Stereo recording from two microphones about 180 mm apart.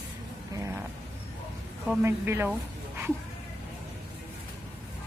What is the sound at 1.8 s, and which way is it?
Speech, 15° right (ahead or behind).